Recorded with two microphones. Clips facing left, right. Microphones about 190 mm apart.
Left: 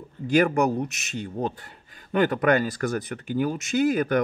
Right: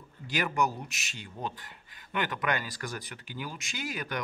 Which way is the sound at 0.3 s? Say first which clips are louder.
Left 10 dB; 50° left (ahead or behind).